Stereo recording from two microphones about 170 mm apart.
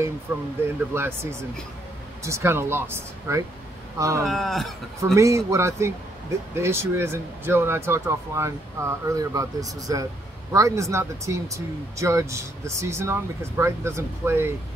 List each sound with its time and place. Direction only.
0.3 s speech: 15° right (ahead or behind)
4.2 s speech: centre (ahead or behind)
5.1 s speech: 15° right (ahead or behind)